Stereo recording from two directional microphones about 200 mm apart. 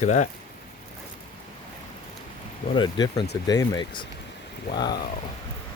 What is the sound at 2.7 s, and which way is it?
Speech, 20° left (ahead or behind).